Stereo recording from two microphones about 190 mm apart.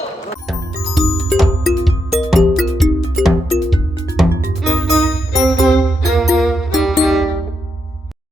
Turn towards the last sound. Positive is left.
turn(degrees=0)  # may be behind; listen again after turning